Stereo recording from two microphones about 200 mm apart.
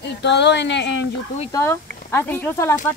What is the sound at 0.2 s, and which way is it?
Speech, 60° left (ahead or behind).